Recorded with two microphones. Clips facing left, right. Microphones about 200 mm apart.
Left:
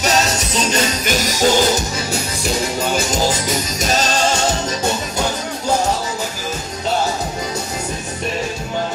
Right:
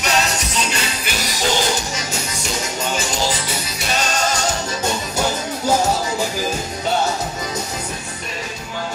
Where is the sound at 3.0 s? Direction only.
40° left (ahead or behind).